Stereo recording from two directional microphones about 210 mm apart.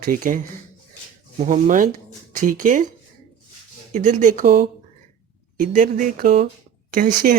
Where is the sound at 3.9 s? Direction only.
35° right (ahead or behind).